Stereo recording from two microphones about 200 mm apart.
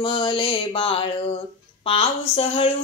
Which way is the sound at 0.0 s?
25° left (ahead or behind).